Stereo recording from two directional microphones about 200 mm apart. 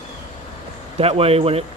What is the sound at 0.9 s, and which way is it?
Speech, 30° right (ahead or behind).